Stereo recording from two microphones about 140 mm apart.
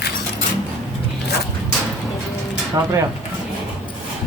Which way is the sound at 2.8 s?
25° right (ahead or behind).